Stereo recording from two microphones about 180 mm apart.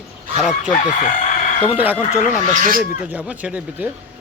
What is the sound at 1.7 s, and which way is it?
Speech, 10° right (ahead or behind).